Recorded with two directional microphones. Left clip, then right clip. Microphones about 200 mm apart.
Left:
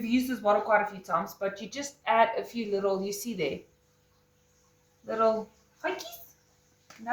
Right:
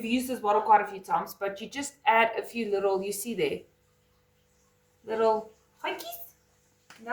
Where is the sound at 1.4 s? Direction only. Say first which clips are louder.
Even; 20° right (ahead or behind).